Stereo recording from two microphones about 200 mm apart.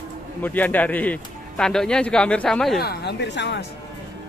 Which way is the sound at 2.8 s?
55° left (ahead or behind).